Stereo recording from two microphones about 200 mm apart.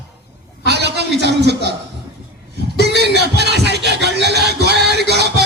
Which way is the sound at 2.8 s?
55° right (ahead or behind).